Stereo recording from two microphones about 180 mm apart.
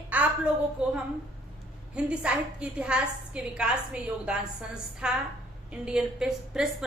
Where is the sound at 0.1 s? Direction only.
10° right (ahead or behind).